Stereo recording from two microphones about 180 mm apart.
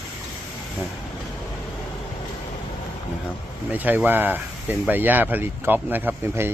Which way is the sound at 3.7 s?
10° right (ahead or behind).